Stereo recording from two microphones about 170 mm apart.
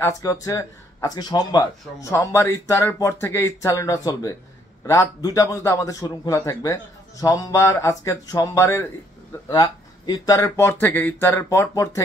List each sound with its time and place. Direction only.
0.0 s a man's voice: 20° left (ahead or behind)